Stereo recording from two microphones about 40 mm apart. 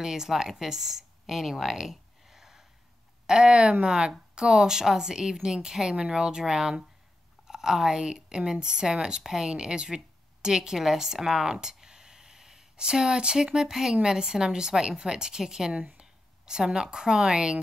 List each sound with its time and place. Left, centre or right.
0.0 s speech: centre
3.3 s a woman's voice: right
9.5 s speech: right
15.7 s a woman's voice: right